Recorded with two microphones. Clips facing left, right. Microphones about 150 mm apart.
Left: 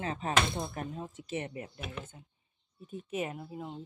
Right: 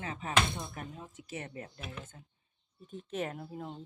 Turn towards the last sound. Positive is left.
turn(degrees=5)  # may be behind; listen again after turning